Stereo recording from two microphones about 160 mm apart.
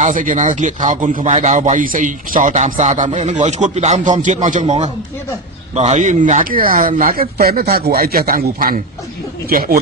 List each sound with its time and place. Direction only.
0.0 s a man's voice: 55° right (ahead or behind)